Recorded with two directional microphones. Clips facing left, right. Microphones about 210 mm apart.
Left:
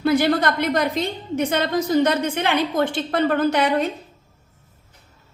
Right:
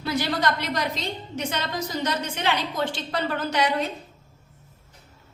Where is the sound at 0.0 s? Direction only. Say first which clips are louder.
Left 7 dB; 55° left (ahead or behind).